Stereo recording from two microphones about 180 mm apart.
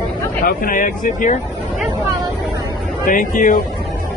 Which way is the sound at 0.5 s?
50° left (ahead or behind).